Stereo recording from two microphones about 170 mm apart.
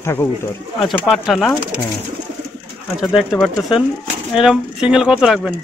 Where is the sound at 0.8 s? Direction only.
Centre (ahead or behind).